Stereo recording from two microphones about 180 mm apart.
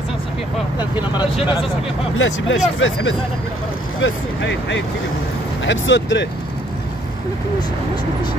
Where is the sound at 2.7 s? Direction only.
90° left.